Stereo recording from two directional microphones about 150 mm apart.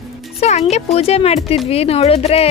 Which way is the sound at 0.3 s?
45° left (ahead or behind).